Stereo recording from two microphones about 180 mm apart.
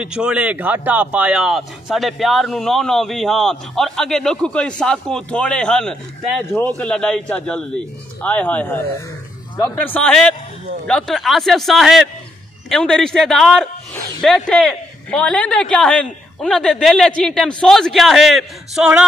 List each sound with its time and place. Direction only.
0.0 s a man's voice: 5° right (ahead or behind)